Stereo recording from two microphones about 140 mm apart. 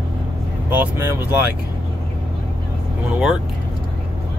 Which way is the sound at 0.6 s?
15° right (ahead or behind).